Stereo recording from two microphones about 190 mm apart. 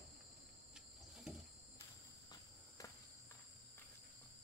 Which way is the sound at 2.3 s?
20° left (ahead or behind).